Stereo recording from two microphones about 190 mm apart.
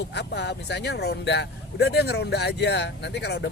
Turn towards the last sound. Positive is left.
turn(degrees=60)  # may be behind; listen again after turning